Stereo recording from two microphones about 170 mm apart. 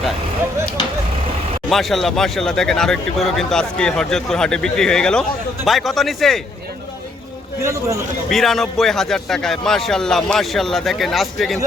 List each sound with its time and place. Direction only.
1.7 s speech: centre (ahead or behind)
7.6 s a man's voice: 15° right (ahead or behind)
8.3 s speech: centre (ahead or behind)